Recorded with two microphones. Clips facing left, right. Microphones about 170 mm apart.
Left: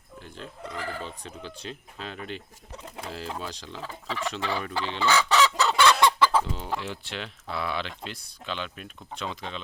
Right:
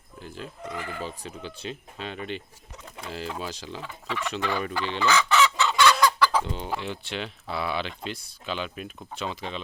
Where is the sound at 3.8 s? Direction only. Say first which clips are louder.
Left 1 dB; 35° left (ahead or behind).